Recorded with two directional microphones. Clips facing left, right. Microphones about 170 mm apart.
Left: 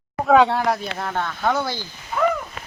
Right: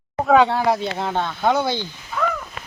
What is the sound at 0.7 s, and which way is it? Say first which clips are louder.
Speech: right 3 dB; 25° right (ahead or behind).